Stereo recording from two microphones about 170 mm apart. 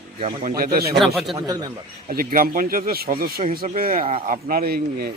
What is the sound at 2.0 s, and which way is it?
Speech, 55° right (ahead or behind).